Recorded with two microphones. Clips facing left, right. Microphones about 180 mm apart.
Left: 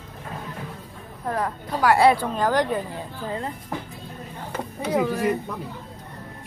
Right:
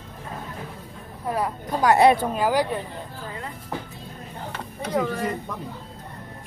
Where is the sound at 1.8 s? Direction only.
20° right (ahead or behind).